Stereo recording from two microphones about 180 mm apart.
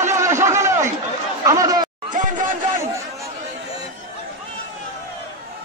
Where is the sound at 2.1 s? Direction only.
45° right (ahead or behind).